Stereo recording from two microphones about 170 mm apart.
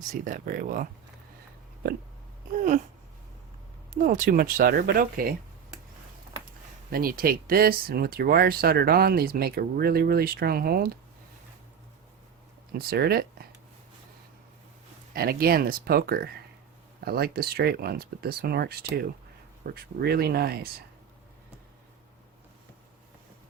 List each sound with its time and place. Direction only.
0.1 s speech: 55° right (ahead or behind)
3.9 s speech: 50° right (ahead or behind)
6.9 s speech: 60° right (ahead or behind)
12.7 s speech: 65° right (ahead or behind)
15.1 s speech: 60° right (ahead or behind)